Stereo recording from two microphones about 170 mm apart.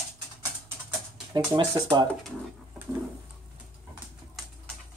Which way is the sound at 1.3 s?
25° right (ahead or behind).